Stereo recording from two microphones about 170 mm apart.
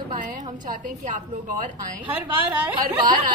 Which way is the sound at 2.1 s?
10° right (ahead or behind).